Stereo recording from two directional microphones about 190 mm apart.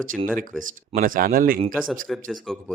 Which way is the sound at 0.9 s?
50° right (ahead or behind).